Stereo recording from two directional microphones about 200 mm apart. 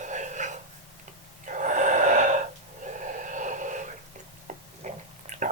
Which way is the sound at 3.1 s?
40° right (ahead or behind).